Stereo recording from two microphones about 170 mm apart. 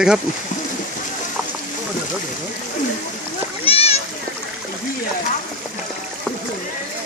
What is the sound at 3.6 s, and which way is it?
Splash, 35° left (ahead or behind).